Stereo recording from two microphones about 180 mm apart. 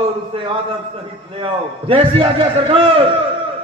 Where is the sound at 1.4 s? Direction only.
30° right (ahead or behind).